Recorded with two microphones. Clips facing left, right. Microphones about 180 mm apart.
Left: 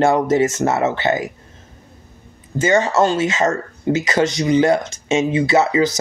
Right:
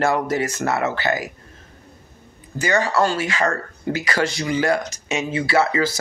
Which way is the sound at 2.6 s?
25° left (ahead or behind).